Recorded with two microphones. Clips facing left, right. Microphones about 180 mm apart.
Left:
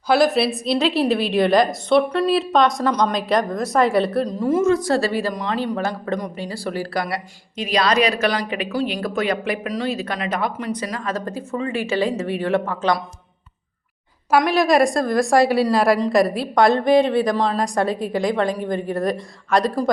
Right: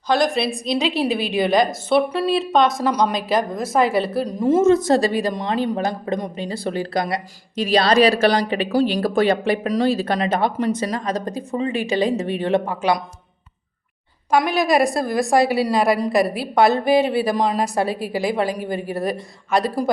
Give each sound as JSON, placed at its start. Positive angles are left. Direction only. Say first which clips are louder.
{"t": 0.1, "sound": "a woman's voice", "louder": "left 2 dB", "side_deg": 5}
{"t": 4.4, "sound": "speech", "louder": "right 4 dB", "side_deg": -25}
{"t": 7.5, "sound": "speech", "louder": "right 3 dB", "side_deg": -30}
{"t": 14.3, "sound": "a woman's voice", "louder": "left 1 dB", "side_deg": 0}